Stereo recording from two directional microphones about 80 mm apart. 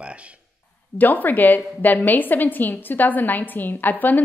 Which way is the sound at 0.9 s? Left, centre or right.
Left.